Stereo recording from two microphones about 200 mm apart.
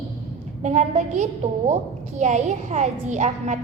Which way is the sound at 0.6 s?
35° right (ahead or behind).